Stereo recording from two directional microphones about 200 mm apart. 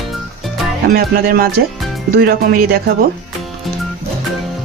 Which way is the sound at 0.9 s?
50° right (ahead or behind).